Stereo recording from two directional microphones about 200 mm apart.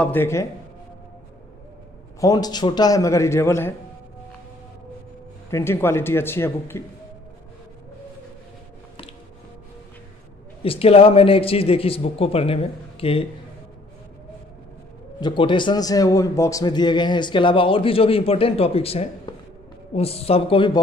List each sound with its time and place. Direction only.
0.0 s a man's voice: 10° left (ahead or behind)
2.1 s a man's voice: 20° left (ahead or behind)
5.5 s a man's voice: 10° left (ahead or behind)
10.6 s a man's voice: 30° left (ahead or behind)
15.1 s a man's voice: 20° left (ahead or behind)